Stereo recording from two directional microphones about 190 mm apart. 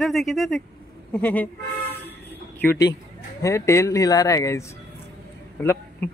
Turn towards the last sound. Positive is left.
turn(degrees=10)  # may be behind; listen again after turning